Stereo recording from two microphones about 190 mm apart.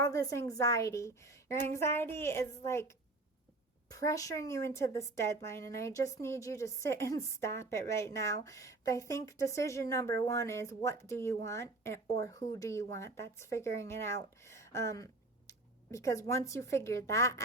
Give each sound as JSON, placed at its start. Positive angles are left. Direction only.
{"t": 0.0, "sound": "a woman's voice", "side_deg": 15}